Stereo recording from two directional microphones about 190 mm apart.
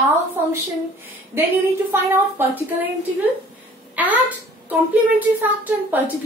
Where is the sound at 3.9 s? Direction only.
10° right (ahead or behind).